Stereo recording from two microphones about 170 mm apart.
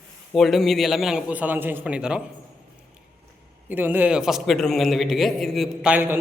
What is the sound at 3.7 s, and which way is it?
A man's voice, 10° right (ahead or behind).